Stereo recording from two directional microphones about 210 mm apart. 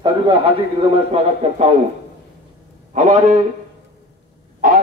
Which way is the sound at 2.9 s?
35° right (ahead or behind).